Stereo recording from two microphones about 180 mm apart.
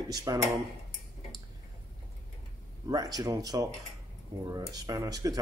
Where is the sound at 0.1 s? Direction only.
20° right (ahead or behind).